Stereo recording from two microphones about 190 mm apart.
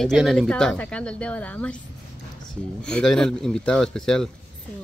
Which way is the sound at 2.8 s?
5° left (ahead or behind).